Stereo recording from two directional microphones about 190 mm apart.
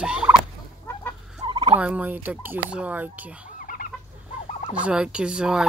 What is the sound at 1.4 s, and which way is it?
Fowl, 25° right (ahead or behind).